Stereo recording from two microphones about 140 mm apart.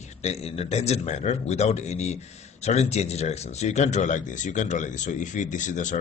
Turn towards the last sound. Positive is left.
turn(degrees=65)  # may be behind; listen again after turning